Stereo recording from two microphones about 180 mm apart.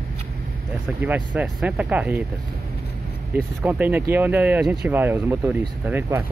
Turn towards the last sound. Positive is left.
turn(degrees=-10)  # may be behind; listen again after turning